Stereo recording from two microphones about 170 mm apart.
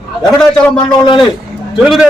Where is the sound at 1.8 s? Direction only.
5° right (ahead or behind).